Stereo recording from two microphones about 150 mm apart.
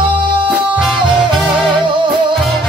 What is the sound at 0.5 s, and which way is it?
Music, 5° right (ahead or behind).